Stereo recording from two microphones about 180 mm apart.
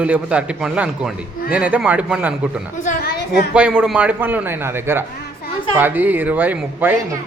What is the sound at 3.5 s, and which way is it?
Speech, 5° right (ahead or behind).